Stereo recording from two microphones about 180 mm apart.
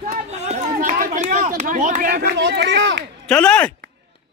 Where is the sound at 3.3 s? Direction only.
5° left (ahead or behind).